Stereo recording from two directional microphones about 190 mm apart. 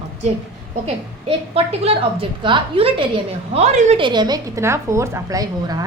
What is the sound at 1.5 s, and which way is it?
A woman's voice, 30° right (ahead or behind).